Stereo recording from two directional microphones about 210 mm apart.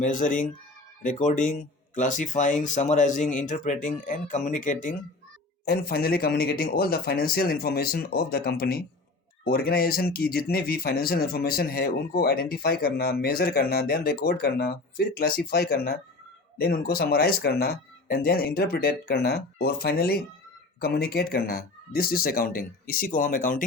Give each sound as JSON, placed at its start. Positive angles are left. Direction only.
{"t": 0.0, "sound": "speech", "side_deg": 40}